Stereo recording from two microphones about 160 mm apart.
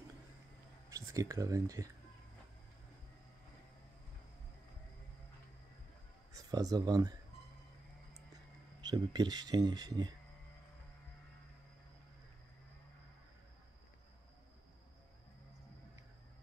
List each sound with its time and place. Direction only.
0.8 s speech: 20° right (ahead or behind)
6.3 s speech: 25° right (ahead or behind)
8.8 s speech: 25° right (ahead or behind)